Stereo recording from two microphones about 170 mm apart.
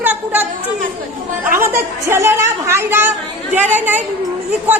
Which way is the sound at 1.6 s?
15° right (ahead or behind).